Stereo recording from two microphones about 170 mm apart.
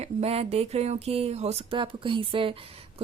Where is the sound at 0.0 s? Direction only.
35° right (ahead or behind).